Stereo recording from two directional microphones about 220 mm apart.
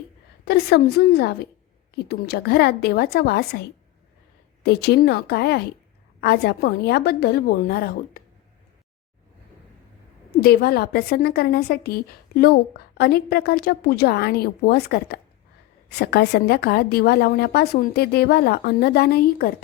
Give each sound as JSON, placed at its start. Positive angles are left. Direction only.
{"t": 0.4, "sound": "a woman's voice", "side_deg": 45}
{"t": 4.6, "sound": "a woman's voice", "side_deg": 50}
{"t": 10.4, "sound": "a woman's voice", "side_deg": 45}